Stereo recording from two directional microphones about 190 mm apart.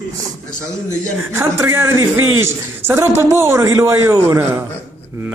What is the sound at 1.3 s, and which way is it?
Speech, 10° right (ahead or behind).